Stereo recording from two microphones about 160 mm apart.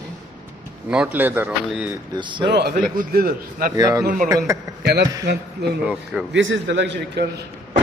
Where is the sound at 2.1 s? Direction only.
30° right (ahead or behind).